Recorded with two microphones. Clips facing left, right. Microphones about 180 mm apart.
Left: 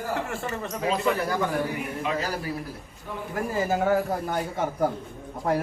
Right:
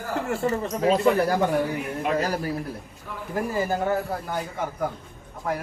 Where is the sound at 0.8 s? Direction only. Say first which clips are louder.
Right 5 dB; 40° right (ahead or behind).